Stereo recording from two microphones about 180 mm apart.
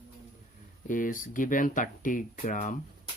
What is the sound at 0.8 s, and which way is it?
Speech, 45° left (ahead or behind).